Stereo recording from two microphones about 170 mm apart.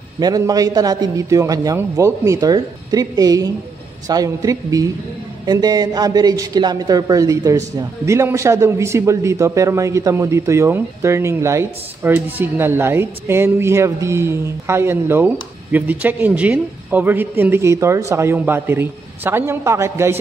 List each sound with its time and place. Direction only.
0.2 s a man's voice: 20° right (ahead or behind)